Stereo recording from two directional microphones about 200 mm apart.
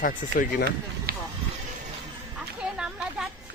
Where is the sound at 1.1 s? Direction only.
50° right (ahead or behind).